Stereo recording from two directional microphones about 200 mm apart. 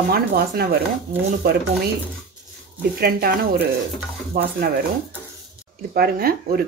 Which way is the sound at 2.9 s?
50° right (ahead or behind).